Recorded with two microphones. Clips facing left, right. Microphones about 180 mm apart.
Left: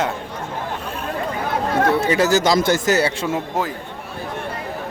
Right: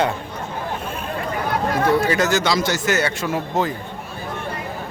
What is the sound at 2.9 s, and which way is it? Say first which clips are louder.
Speech: left 2 dB; 30° left (ahead or behind).